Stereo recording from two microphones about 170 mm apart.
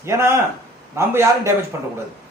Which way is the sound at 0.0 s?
15° right (ahead or behind).